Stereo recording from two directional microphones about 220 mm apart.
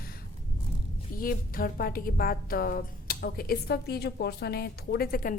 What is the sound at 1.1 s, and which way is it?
A woman's voice, 40° left (ahead or behind).